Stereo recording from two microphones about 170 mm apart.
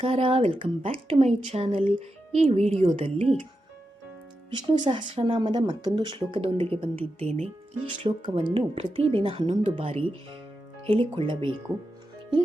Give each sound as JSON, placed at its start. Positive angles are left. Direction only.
{"t": 0.0, "sound": "speech", "side_deg": -30}
{"t": 4.5, "sound": "speech", "side_deg": -25}